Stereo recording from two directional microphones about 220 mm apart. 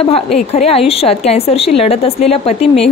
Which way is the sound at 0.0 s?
30° left (ahead or behind).